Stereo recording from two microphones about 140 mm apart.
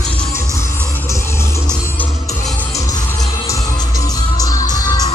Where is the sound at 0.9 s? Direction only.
20° left (ahead or behind).